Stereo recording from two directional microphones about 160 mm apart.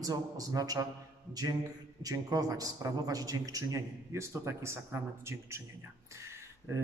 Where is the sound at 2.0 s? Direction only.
25° right (ahead or behind).